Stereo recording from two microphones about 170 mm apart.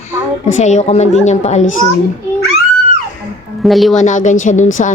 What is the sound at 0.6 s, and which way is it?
A woman's voice, 45° left (ahead or behind).